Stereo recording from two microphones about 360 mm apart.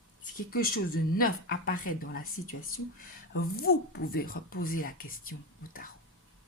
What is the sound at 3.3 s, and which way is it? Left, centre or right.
Speech, left.